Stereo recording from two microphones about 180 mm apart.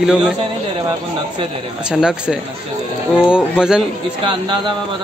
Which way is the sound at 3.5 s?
5° right (ahead or behind).